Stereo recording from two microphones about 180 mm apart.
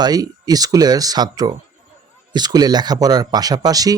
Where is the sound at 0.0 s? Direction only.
20° right (ahead or behind).